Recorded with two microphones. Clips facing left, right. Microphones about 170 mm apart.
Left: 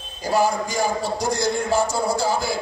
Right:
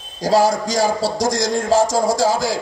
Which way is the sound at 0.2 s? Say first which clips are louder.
Right 5 dB; 90° right.